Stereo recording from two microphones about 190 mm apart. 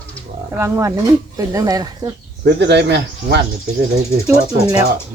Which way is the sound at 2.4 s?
65° right (ahead or behind).